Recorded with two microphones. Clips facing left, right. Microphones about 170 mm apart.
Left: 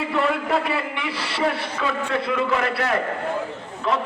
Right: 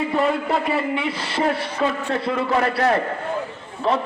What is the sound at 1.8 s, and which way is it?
A man's voice, 35° right (ahead or behind).